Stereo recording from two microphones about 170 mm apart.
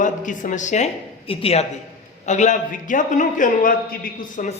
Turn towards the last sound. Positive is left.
turn(degrees=50)  # may be behind; listen again after turning